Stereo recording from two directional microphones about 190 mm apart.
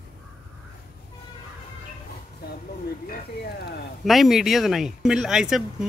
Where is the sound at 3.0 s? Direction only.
55° left (ahead or behind).